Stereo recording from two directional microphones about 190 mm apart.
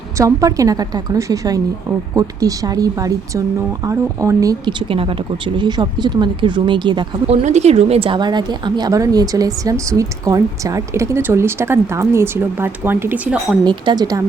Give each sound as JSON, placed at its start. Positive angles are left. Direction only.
{"t": 0.2, "sound": "speech", "side_deg": -15}
{"t": 7.4, "sound": "speech", "side_deg": -35}
{"t": 13.7, "sound": "speech", "side_deg": -20}